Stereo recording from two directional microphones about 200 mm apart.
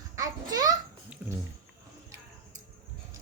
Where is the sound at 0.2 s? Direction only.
20° right (ahead or behind).